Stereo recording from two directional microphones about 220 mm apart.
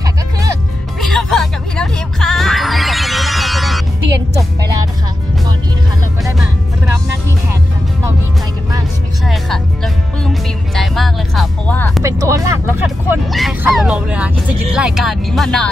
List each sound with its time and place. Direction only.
0.0 s music: 15° right (ahead or behind)
1.0 s music: centre (ahead or behind)
9.2 s music: centre (ahead or behind)
12.0 s music: 15° right (ahead or behind)
12.8 s speech: centre (ahead or behind)